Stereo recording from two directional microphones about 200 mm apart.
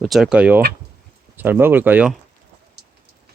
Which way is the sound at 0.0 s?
Centre (ahead or behind).